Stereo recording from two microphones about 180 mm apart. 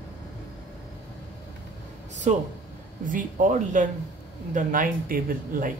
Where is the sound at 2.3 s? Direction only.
45° right (ahead or behind).